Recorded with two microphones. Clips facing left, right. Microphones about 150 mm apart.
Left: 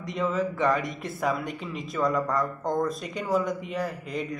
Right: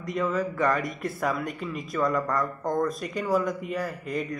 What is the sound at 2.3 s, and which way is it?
Speech, 20° left (ahead or behind).